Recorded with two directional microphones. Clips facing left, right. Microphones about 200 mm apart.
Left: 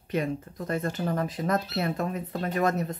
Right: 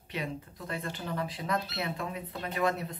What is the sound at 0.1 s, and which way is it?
Speech, 45° left (ahead or behind).